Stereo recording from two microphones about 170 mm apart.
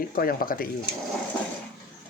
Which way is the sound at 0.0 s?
55° left (ahead or behind).